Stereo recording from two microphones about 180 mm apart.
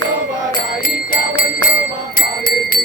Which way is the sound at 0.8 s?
50° left (ahead or behind).